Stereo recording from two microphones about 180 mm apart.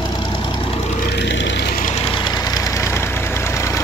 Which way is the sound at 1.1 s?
85° left.